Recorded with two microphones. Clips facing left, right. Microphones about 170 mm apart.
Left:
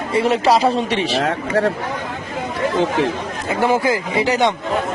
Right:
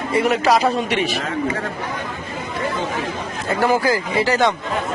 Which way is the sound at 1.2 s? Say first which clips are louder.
Left 5 dB; 65° left (ahead or behind).